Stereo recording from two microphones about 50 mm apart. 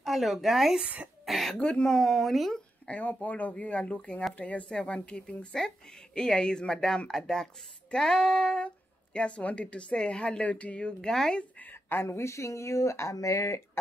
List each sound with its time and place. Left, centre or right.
0.0 s speech: centre
1.6 s speech: centre
2.0 s speech: centre
2.9 s speech: left
11.6 s speech: left